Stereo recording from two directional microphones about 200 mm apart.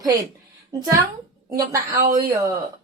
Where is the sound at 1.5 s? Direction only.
45° right (ahead or behind).